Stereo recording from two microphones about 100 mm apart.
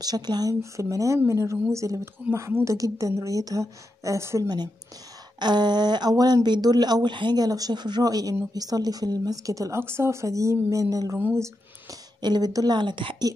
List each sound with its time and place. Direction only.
0.0 s speech: 40° right (ahead or behind)
2.2 s a woman's voice: 20° right (ahead or behind)
2.6 s speech: 35° right (ahead or behind)
5.4 s speech: 45° right (ahead or behind)
11.3 s a sound: 30° right (ahead or behind)
12.2 s speech: 45° right (ahead or behind)